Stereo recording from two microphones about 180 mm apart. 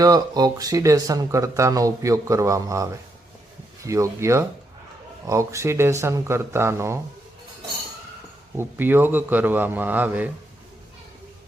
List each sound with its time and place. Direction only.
0.0 s speech: 20° right (ahead or behind)
8.5 s speech: 10° right (ahead or behind)